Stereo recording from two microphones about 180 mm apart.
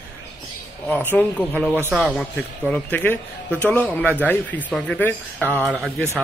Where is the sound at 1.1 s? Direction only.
5° left (ahead or behind).